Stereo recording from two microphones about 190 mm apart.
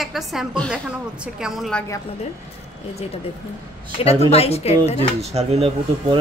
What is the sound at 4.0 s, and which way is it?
A woman's voice, 30° left (ahead or behind).